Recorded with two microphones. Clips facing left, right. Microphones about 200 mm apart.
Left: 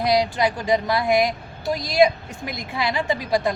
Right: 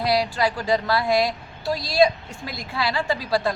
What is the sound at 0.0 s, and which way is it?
A woman's voice, 20° left (ahead or behind).